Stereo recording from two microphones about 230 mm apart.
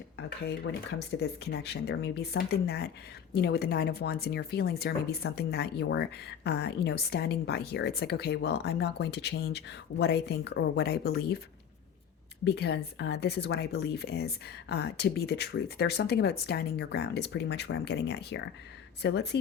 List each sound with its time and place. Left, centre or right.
0.2 s speech: left
12.5 s speech: left